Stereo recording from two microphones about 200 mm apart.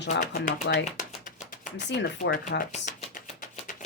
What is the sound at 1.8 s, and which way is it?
Chopping, 55° left (ahead or behind).